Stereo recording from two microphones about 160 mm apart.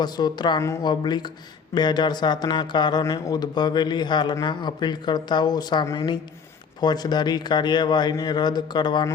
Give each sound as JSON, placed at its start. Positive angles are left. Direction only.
{"t": 0.0, "sound": "a man's voice", "side_deg": 25}